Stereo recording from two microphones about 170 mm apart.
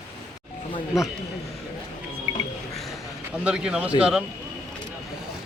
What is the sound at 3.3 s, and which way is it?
Speech, 5° right (ahead or behind).